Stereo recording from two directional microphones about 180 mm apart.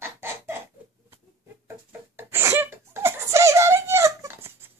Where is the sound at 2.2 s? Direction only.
15° right (ahead or behind).